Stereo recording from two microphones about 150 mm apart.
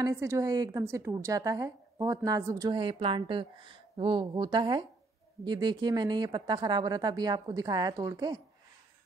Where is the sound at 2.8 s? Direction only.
35° right (ahead or behind).